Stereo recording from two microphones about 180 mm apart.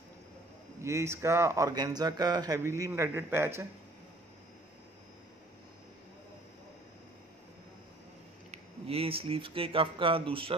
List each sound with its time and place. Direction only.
0.8 s a man's voice: 15° right (ahead or behind)
8.5 s speech: 35° right (ahead or behind)